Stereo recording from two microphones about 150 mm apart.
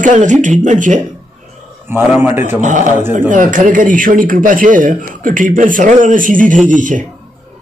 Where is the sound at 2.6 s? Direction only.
55° right (ahead or behind).